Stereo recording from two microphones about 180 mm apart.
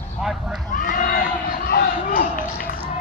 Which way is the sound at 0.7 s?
50° left (ahead or behind).